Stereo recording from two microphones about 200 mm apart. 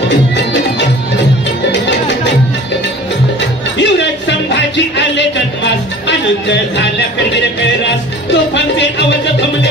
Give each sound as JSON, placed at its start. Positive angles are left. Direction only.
{"t": 3.3, "sound": "music", "side_deg": 60}
{"t": 8.3, "sound": "music", "side_deg": 60}